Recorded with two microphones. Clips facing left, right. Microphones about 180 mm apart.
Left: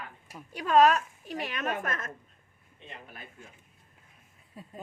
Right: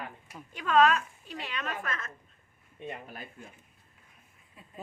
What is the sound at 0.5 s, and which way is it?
A woman's voice, 40° left (ahead or behind).